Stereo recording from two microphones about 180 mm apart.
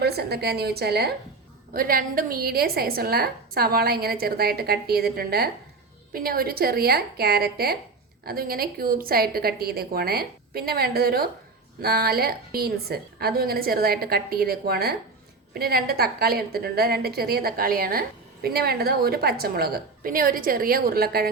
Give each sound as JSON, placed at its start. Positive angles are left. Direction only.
{"t": 0.0, "sound": "a woman's voice", "side_deg": -60}